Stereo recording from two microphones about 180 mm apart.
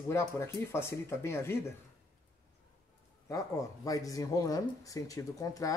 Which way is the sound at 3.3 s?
20° left (ahead or behind).